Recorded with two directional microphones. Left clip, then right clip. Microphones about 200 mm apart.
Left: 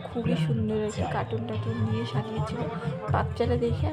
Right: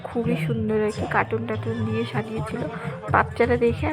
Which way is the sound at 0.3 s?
15° right (ahead or behind).